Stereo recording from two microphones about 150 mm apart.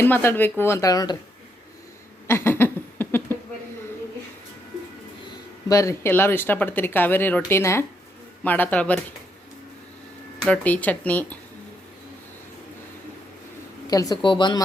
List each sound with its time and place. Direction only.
0.0 s speech: 15° left (ahead or behind)
2.2 s a sound: 15° left (ahead or behind)
5.6 s speech: 20° left (ahead or behind)
10.5 s speech: 10° left (ahead or behind)
13.8 s speech: 25° left (ahead or behind)